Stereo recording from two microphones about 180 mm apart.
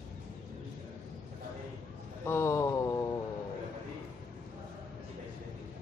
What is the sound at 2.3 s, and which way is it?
Mantra, 15° left (ahead or behind).